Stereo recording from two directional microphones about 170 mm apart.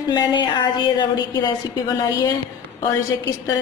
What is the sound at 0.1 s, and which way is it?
A woman's voice, 25° left (ahead or behind).